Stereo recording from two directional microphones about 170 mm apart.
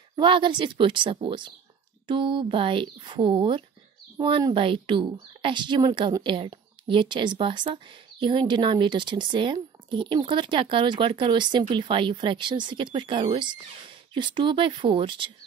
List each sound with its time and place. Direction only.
0.1 s a woman's voice: 30° right (ahead or behind)